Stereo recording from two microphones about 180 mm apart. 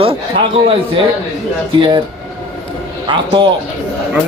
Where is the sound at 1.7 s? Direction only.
25° right (ahead or behind).